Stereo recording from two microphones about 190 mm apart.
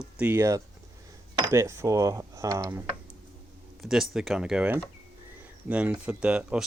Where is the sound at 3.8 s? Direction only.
Centre (ahead or behind).